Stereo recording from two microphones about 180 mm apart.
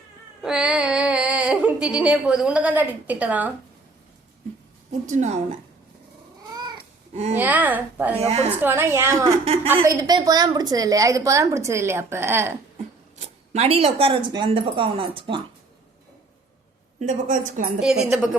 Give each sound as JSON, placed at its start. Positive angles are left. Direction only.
{"t": 0.4, "sound": "speech", "side_deg": -5}
{"t": 5.0, "sound": "a woman's voice", "side_deg": -40}
{"t": 6.5, "sound": "cat", "side_deg": -25}
{"t": 7.3, "sound": "a woman's voice", "side_deg": -10}
{"t": 8.2, "sound": "a woman's voice", "side_deg": -35}
{"t": 8.6, "sound": "a woman's voice", "side_deg": -15}
{"t": 13.1, "sound": "speech", "side_deg": -35}
{"t": 17.0, "sound": "a woman's voice", "side_deg": -45}
{"t": 17.7, "sound": "a woman's voice", "side_deg": -5}